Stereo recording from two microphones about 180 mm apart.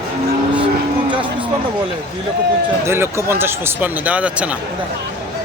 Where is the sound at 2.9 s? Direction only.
15° right (ahead or behind).